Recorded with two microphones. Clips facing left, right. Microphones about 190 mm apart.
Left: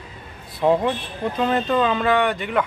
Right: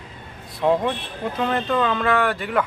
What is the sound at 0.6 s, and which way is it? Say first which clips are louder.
Speech: left 1 dB; 5° left (ahead or behind).